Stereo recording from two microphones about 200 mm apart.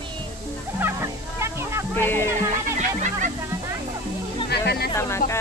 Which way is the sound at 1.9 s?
10° left (ahead or behind).